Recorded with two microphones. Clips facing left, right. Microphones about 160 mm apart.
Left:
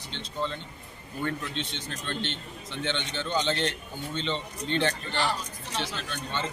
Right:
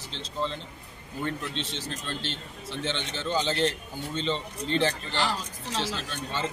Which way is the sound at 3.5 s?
35° right (ahead or behind).